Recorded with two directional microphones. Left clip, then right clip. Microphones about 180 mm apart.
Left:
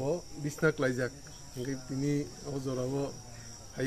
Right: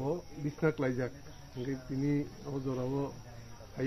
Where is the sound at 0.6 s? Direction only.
15° left (ahead or behind).